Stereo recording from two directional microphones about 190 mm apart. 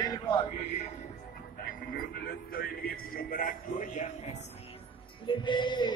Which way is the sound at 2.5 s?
50° left (ahead or behind).